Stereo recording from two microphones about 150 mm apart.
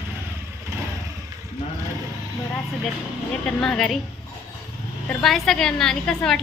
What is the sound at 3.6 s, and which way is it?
Speech, 5° left (ahead or behind).